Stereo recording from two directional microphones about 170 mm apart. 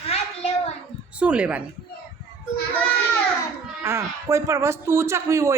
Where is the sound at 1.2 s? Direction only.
5° right (ahead or behind).